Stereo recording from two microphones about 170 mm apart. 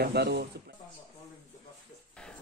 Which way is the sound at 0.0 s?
70° right (ahead or behind).